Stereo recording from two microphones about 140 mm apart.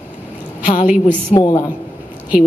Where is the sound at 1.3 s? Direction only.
30° left (ahead or behind).